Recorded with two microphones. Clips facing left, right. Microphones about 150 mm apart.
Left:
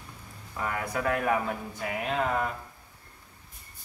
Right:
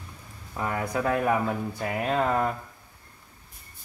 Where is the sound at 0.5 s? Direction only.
25° right (ahead or behind).